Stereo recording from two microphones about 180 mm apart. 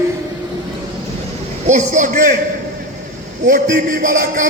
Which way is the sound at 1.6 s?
40° right (ahead or behind).